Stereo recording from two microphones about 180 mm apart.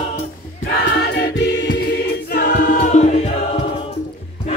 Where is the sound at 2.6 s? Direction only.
50° left (ahead or behind).